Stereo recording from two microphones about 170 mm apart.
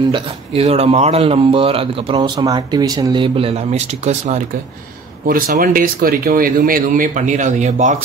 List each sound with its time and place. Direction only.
0.1 s speech: 35° right (ahead or behind)
5.2 s speech: 55° right (ahead or behind)